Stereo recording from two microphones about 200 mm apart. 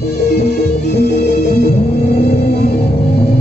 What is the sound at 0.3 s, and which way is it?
Music, 55° left (ahead or behind).